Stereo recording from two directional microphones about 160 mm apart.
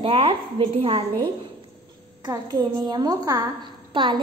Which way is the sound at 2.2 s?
25° right (ahead or behind).